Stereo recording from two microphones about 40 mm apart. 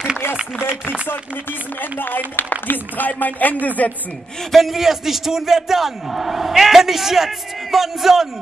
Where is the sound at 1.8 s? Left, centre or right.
Left.